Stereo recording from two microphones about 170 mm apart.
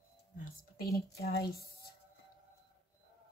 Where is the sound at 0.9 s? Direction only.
65° left (ahead or behind).